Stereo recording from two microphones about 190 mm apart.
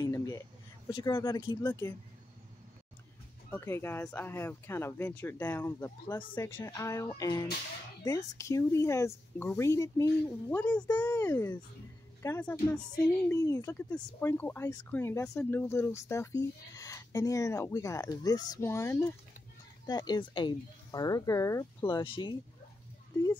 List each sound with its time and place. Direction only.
0.0 s a sound: 20° left (ahead or behind)
0.8 s speech: 25° left (ahead or behind)
3.4 s speech: 15° left (ahead or behind)